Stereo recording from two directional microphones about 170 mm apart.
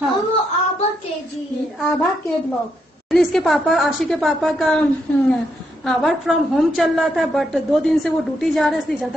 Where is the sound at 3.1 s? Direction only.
Centre (ahead or behind).